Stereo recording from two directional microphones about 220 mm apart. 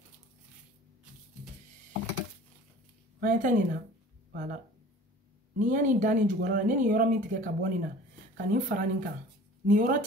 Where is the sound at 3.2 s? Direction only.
35° right (ahead or behind).